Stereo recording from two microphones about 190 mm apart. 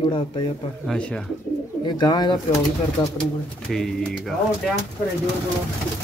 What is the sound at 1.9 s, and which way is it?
Speech, 25° left (ahead or behind).